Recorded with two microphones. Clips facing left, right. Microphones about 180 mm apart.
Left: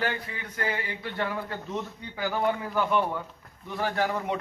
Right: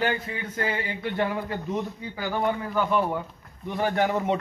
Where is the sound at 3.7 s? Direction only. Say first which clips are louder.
Right 4 dB; 20° right (ahead or behind).